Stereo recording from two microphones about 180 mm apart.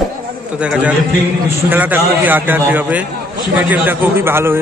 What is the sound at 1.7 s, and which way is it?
A man's voice, 10° right (ahead or behind).